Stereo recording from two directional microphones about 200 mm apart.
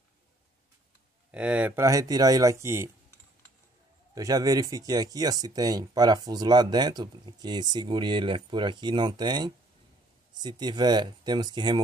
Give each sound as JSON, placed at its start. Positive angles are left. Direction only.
{"t": 1.3, "sound": "speech", "side_deg": -5}
{"t": 4.1, "sound": "speech", "side_deg": -15}